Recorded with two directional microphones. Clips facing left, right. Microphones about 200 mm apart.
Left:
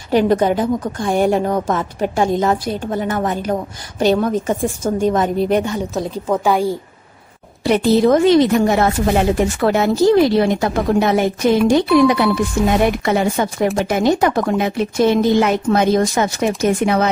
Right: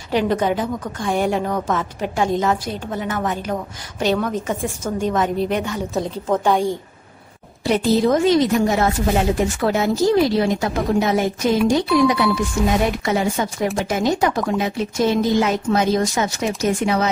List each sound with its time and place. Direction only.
0.1 s a woman's voice: 45° left (ahead or behind)
5.9 s a woman's voice: 5° left (ahead or behind)
7.6 s a woman's voice: 65° left (ahead or behind)